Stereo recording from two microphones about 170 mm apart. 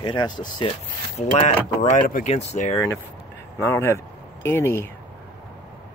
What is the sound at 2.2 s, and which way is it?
Speech, 40° left (ahead or behind).